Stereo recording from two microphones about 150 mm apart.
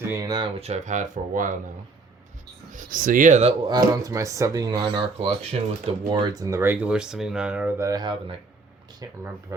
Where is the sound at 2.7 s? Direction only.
65° right (ahead or behind).